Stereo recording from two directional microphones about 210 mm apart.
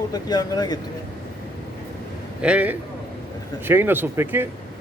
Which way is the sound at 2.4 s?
5° right (ahead or behind).